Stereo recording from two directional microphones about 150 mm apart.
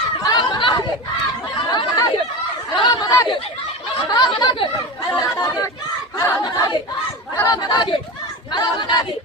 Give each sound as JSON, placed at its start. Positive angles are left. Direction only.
{"t": 0.2, "sound": "snicker", "side_deg": 25}
{"t": 1.7, "sound": "chatter", "side_deg": 30}
{"t": 4.1, "sound": "snicker", "side_deg": 25}
{"t": 5.1, "sound": "chatter", "side_deg": 20}
{"t": 6.1, "sound": "a sound", "side_deg": 20}
{"t": 7.3, "sound": "chatter", "side_deg": 25}
{"t": 8.5, "sound": "choir", "side_deg": 30}